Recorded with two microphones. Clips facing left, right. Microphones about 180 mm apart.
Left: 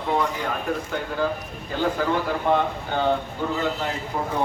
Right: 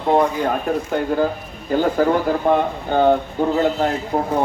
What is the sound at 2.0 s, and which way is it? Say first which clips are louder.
Speech: right 7 dB; 45° right (ahead or behind).